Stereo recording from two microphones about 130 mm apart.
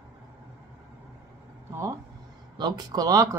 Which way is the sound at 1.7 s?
20° right (ahead or behind).